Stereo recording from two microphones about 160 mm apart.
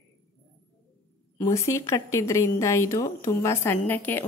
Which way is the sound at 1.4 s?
15° left (ahead or behind).